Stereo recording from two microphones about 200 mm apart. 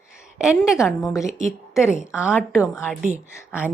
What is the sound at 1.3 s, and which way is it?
Speech, 35° right (ahead or behind).